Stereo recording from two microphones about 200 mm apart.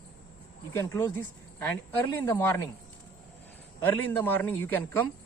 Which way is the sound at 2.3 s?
10° left (ahead or behind).